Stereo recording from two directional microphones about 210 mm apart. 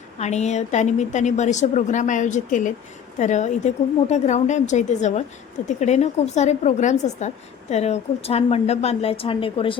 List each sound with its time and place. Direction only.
0.2 s a woman's voice: 35° left (ahead or behind)